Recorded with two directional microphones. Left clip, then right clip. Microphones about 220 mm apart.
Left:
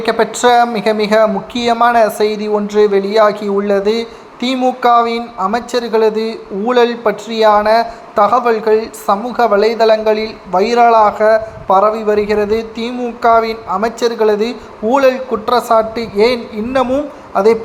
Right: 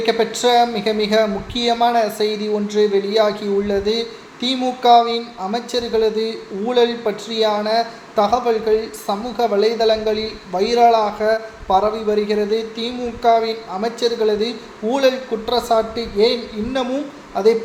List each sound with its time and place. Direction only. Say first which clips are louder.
0.0 s a woman's voice: left 5 dB; 15° left (ahead or behind)